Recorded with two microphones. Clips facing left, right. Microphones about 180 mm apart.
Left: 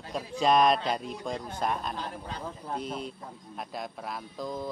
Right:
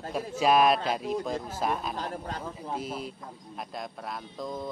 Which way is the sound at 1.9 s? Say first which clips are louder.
Right 3 dB; 45° right (ahead or behind).